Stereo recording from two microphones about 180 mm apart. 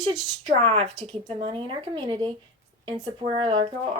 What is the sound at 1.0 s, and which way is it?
Speech, 30° right (ahead or behind).